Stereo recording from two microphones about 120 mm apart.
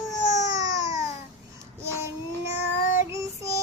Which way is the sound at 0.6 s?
30° right (ahead or behind).